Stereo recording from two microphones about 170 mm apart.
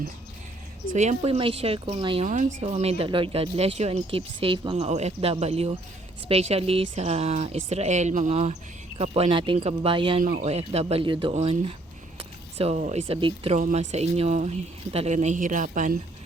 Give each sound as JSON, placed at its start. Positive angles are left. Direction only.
{"t": 0.9, "sound": "speech", "side_deg": -40}
{"t": 2.2, "sound": "speech", "side_deg": -45}
{"t": 12.7, "sound": "speech", "side_deg": -45}
{"t": 13.6, "sound": "speech", "side_deg": -45}